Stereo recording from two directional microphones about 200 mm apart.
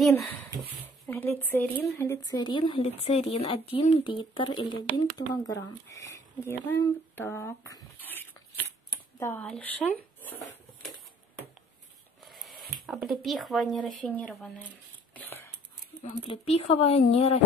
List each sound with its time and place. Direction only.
1.0 s speech: 10° left (ahead or behind)
12.3 s a sound: centre (ahead or behind)
12.8 s speech: centre (ahead or behind)
15.1 s whispering: 10° left (ahead or behind)
16.0 s speech: 30° left (ahead or behind)